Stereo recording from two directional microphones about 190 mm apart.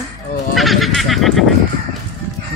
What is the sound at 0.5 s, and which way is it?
Goat, centre (ahead or behind).